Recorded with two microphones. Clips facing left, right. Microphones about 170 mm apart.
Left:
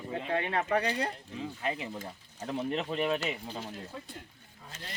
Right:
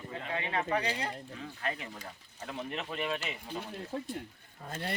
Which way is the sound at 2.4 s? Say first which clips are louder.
Left 6 dB; 30° left (ahead or behind).